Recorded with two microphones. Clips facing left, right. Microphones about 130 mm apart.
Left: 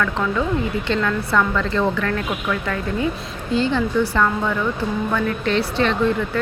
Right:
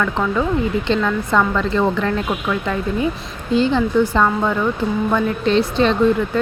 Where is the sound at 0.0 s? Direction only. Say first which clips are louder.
Right 2 dB; 20° right (ahead or behind).